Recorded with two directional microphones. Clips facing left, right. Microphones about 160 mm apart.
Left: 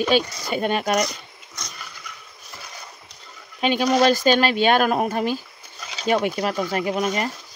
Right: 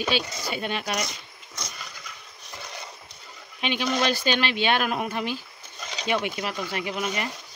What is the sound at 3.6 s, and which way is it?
Speech, 45° left (ahead or behind).